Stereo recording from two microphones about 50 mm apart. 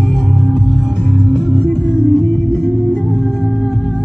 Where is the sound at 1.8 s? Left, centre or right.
Left.